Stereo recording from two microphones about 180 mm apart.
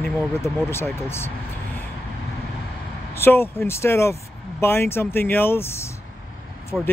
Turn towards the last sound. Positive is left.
turn(degrees=5)  # may be behind; listen again after turning